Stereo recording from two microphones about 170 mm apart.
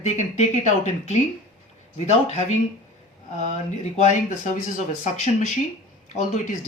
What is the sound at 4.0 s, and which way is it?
Speech, 45° left (ahead or behind).